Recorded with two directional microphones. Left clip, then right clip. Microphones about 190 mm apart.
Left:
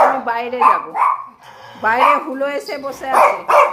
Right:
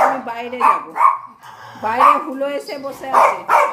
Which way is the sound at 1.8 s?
Centre (ahead or behind).